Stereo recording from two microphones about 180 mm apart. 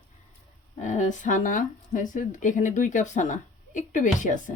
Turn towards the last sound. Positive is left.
turn(degrees=45)  # may be behind; listen again after turning